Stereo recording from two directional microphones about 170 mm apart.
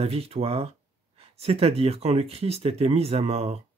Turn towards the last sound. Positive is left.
turn(degrees=-40)  # may be behind; listen again after turning